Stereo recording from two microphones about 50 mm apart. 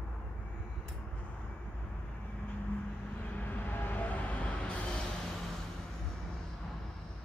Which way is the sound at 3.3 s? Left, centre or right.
Left.